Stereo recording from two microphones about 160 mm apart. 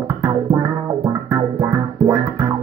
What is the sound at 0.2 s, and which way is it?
Music, 20° right (ahead or behind).